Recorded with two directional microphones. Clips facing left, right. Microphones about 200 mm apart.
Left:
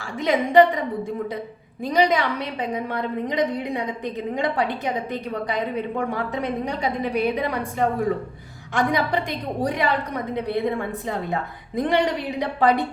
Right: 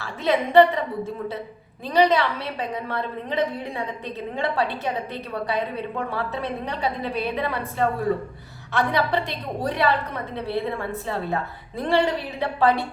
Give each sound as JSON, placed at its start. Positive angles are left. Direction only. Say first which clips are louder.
{"t": 0.0, "sound": "a woman's voice", "louder": "left 1 dB", "side_deg": 15}
{"t": 1.9, "sound": "a woman's voice", "louder": "right 1 dB", "side_deg": 15}